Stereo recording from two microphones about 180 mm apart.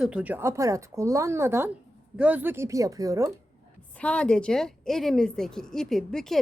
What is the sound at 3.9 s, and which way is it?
A woman's voice, 5° left (ahead or behind).